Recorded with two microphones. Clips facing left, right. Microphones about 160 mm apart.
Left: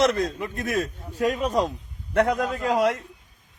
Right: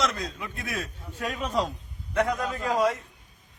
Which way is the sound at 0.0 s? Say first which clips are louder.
Left 8 dB; 55° left (ahead or behind).